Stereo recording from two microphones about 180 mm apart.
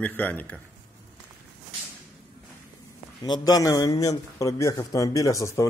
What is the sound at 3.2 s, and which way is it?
A man's voice, 20° left (ahead or behind).